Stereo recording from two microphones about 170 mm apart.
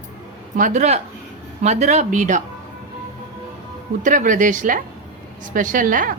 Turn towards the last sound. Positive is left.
turn(degrees=-50)  # may be behind; listen again after turning